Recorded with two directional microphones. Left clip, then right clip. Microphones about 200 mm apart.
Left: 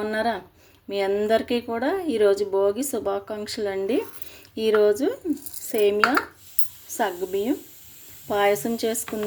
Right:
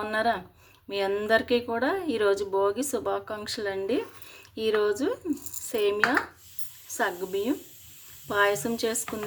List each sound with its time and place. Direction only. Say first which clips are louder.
0.0 s speech: left 1 dB; 5° left (ahead or behind)